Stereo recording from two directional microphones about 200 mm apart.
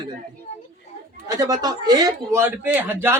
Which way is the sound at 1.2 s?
15° right (ahead or behind).